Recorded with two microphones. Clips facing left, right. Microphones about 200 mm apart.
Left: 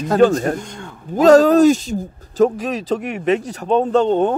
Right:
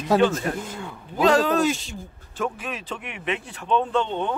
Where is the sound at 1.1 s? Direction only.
45° left (ahead or behind).